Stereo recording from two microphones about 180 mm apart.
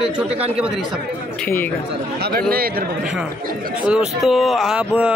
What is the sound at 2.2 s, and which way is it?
Speech, 55° right (ahead or behind).